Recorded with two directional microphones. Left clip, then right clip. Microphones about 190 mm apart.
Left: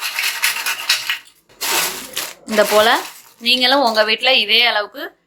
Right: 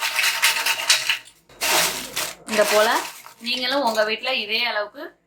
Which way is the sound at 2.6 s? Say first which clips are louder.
Left 5 dB; 50° left (ahead or behind).